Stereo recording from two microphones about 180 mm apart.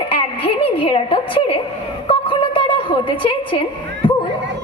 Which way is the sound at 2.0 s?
30° left (ahead or behind).